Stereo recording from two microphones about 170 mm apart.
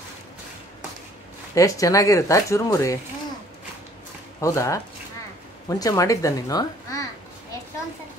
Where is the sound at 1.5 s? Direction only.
20° left (ahead or behind).